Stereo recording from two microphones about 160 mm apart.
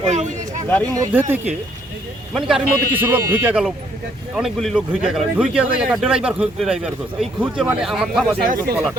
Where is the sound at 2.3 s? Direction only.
5° right (ahead or behind).